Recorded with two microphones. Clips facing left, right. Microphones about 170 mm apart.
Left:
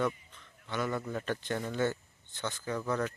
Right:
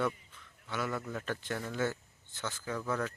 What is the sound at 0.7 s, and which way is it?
Speech, 5° right (ahead or behind).